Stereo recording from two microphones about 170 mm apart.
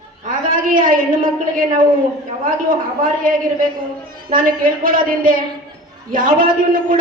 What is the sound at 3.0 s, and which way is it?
A man's voice, 55° right (ahead or behind).